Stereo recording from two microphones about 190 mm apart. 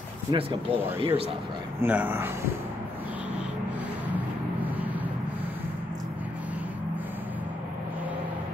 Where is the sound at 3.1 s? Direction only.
5° right (ahead or behind).